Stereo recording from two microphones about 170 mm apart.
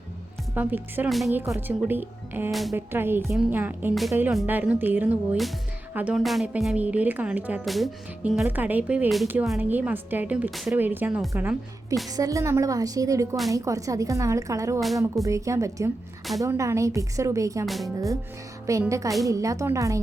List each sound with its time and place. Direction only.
0.5 s a woman's voice: 10° right (ahead or behind)
2.5 s speech: centre (ahead or behind)
2.7 s a woman's voice: 15° right (ahead or behind)
10.8 s a woman's voice: 10° right (ahead or behind)
17.7 s speech: centre (ahead or behind)
18.6 s a woman's voice: 20° right (ahead or behind)